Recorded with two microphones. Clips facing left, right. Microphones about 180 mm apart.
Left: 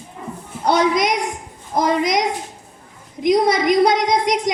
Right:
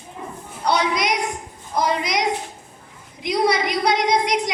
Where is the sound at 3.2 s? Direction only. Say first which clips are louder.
Left 5 dB; 45° left (ahead or behind).